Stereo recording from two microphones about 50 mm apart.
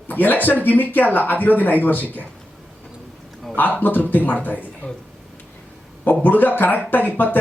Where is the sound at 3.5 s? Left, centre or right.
Left.